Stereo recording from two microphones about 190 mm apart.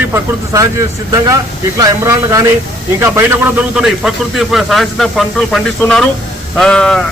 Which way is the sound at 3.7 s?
Centre (ahead or behind).